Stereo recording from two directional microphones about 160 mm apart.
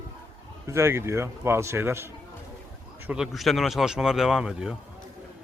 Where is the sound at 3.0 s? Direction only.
5° right (ahead or behind).